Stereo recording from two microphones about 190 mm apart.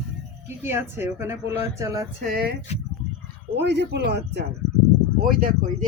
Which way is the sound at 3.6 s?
65° right (ahead or behind).